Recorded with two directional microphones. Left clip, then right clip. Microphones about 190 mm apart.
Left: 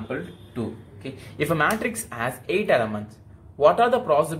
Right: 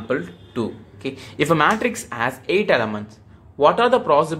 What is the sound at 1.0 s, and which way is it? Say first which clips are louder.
Speech: right 6 dB; 25° right (ahead or behind).